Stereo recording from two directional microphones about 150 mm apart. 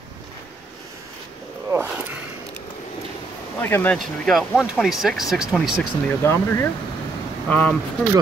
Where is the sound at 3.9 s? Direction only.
Centre (ahead or behind).